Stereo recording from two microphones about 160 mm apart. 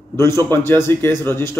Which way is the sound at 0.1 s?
15° left (ahead or behind).